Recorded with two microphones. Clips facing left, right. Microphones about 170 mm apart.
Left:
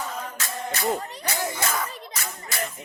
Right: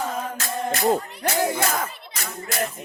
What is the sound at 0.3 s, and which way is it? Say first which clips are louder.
Music: right 5 dB; 35° right (ahead or behind).